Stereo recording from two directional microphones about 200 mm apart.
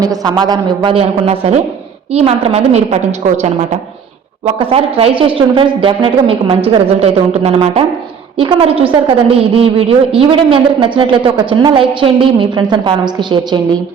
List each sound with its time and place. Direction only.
0.0 s a woman's voice: 20° right (ahead or behind)